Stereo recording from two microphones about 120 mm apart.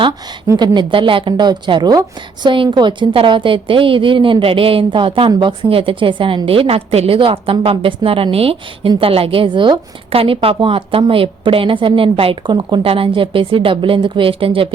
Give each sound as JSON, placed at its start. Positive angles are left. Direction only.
{"t": 0.5, "sound": "a woman's voice", "side_deg": -35}